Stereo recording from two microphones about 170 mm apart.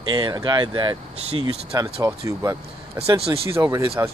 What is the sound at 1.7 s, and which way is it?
Speech, 20° right (ahead or behind).